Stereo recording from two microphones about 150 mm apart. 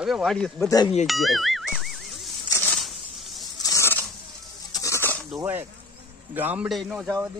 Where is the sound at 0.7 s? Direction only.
25° left (ahead or behind).